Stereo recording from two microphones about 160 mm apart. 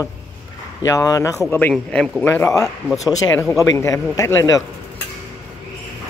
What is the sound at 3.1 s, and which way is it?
A man's voice, 15° left (ahead or behind).